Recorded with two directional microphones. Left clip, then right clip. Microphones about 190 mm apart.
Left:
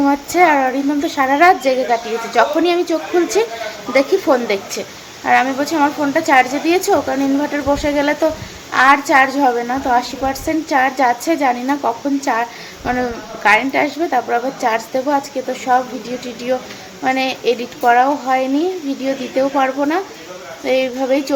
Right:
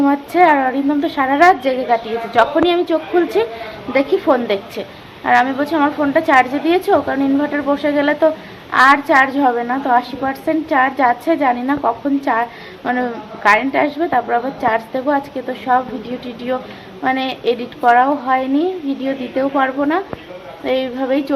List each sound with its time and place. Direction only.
0.0 s a woman's voice: 20° left (ahead or behind)